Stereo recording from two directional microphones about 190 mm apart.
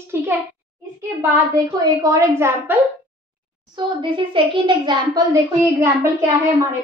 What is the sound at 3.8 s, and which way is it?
A child's voice, 25° right (ahead or behind).